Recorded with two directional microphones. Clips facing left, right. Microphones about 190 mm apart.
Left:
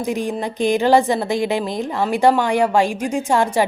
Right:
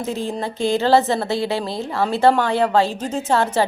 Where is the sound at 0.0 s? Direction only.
15° left (ahead or behind).